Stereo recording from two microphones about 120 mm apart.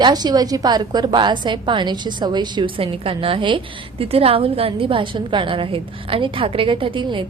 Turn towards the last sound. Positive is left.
turn(degrees=-45)  # may be behind; listen again after turning